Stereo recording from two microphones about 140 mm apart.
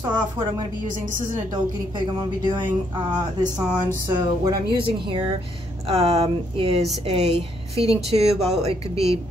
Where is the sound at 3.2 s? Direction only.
30° right (ahead or behind).